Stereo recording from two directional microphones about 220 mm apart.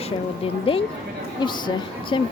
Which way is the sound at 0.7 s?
25° left (ahead or behind).